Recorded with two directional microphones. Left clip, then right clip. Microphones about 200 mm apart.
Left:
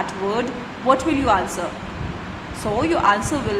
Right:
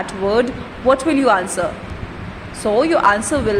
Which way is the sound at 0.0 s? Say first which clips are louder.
Right 5 dB; 25° right (ahead or behind).